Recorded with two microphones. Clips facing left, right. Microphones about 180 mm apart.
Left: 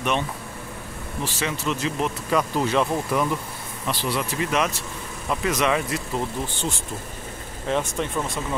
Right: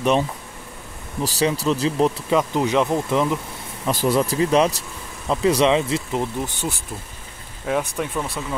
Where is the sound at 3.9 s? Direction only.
45° right (ahead or behind); by 6.2 s 25° right (ahead or behind).